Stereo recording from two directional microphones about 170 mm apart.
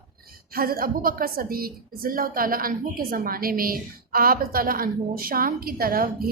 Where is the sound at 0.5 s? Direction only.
60° right (ahead or behind).